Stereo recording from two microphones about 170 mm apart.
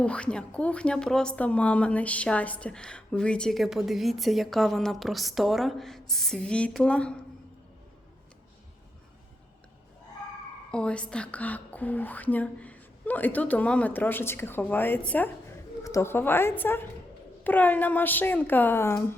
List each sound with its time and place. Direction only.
0.0 s speech: 5° left (ahead or behind)
10.7 s speech: 5° left (ahead or behind)